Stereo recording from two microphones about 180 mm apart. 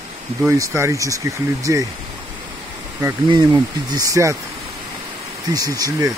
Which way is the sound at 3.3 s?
20° right (ahead or behind).